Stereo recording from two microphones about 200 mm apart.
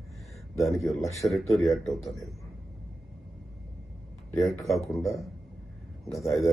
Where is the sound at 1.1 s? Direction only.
Centre (ahead or behind).